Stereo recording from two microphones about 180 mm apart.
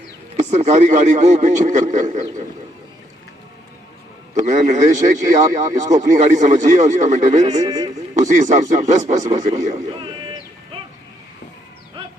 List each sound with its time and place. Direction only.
0.3 s speech: 40° right (ahead or behind)
4.4 s speech: 40° right (ahead or behind)